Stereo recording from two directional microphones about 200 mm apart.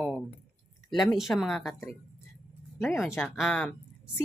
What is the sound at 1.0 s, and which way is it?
Speech, centre (ahead or behind).